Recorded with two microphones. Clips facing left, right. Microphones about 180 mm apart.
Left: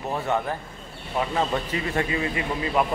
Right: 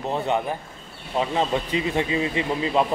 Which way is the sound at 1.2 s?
20° right (ahead or behind).